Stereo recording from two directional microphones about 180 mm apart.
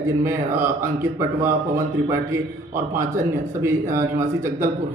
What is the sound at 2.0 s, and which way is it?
A man's voice, 15° right (ahead or behind).